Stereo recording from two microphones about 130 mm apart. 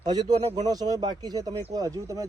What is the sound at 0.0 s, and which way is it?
Speech, 30° right (ahead or behind).